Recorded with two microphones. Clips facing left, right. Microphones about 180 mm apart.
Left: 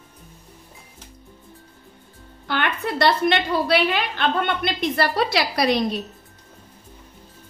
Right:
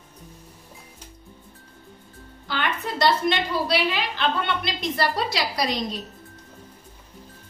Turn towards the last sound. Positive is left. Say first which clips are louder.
# left 5 dB
turn(degrees=65)  # may be behind; listen again after turning